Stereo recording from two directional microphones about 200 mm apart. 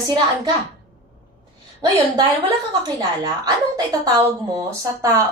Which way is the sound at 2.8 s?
20° right (ahead or behind).